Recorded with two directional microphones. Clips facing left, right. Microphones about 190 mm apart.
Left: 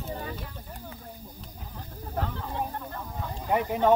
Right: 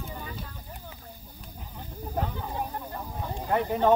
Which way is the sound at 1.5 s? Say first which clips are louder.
Right 1 dB; 5° right (ahead or behind).